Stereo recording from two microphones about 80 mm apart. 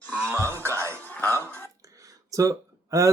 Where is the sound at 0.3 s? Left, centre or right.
Right.